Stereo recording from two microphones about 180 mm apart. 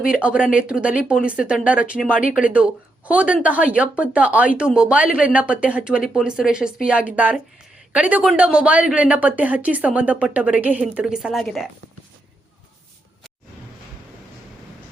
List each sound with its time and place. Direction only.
0.0 s speech: 5° right (ahead or behind)